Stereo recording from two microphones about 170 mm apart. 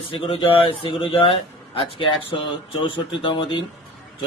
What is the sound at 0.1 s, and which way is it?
Speech, 30° left (ahead or behind).